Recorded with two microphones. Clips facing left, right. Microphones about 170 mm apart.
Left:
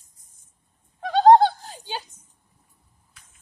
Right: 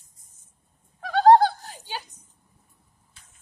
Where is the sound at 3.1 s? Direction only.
25° right (ahead or behind).